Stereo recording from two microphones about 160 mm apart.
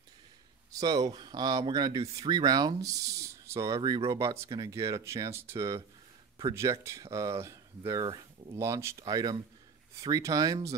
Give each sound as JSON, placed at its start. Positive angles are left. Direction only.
{"t": 0.7, "sound": "speech", "side_deg": -25}